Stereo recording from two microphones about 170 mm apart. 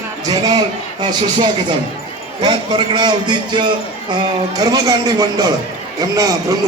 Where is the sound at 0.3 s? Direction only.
20° right (ahead or behind).